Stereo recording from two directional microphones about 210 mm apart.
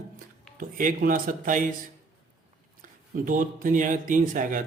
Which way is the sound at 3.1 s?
40° right (ahead or behind).